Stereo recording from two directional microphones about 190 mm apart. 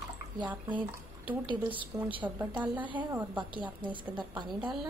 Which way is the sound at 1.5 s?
25° right (ahead or behind).